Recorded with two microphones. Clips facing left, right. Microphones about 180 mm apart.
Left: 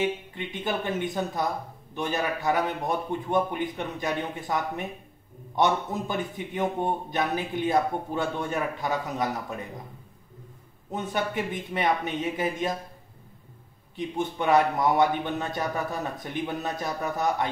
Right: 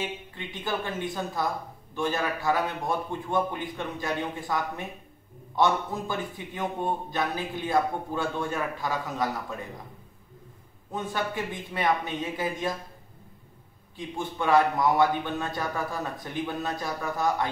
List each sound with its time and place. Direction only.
0.3 s a man's voice: 20° left (ahead or behind)
10.9 s a man's voice: 20° left (ahead or behind)
13.9 s a man's voice: 20° left (ahead or behind)